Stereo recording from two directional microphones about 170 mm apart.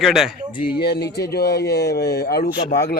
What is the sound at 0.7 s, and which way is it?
Speech, 70° left (ahead or behind).